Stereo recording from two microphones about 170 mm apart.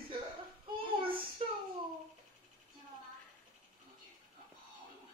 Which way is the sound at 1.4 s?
35° right (ahead or behind).